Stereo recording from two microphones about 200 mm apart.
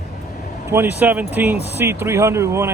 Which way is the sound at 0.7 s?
10° right (ahead or behind).